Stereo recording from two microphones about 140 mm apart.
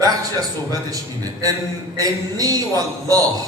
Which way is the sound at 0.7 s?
25° right (ahead or behind).